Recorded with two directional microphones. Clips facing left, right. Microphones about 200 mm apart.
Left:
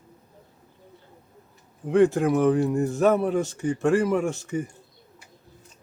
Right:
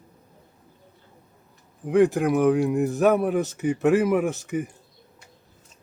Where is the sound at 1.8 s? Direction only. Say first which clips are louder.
Even; 15° right (ahead or behind).